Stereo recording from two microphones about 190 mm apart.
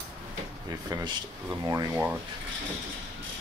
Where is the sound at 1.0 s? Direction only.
20° right (ahead or behind).